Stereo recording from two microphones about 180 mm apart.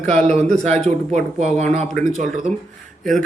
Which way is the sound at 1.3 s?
40° right (ahead or behind).